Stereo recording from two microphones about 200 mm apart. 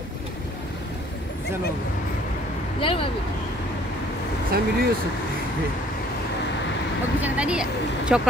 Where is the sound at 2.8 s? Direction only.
25° left (ahead or behind).